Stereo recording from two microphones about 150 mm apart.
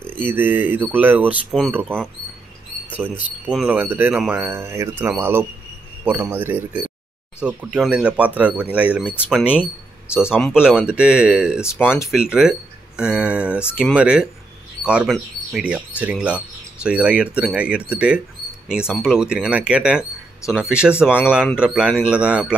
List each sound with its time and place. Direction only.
0.2 s speech: 15° right (ahead or behind)
10.1 s speech: 15° left (ahead or behind)
10.4 s speech: 5° right (ahead or behind)